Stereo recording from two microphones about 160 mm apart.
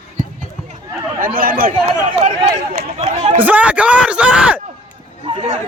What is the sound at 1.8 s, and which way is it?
Speech, 45° right (ahead or behind).